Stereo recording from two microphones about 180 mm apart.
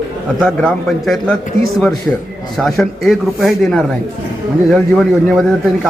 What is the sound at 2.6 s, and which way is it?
A man's voice, centre (ahead or behind).